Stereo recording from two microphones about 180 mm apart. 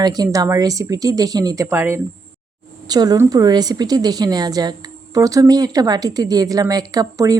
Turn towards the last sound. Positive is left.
turn(degrees=-20)  # may be behind; listen again after turning